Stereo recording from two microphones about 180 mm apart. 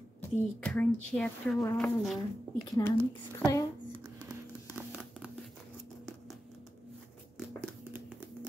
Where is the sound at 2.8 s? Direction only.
20° left (ahead or behind).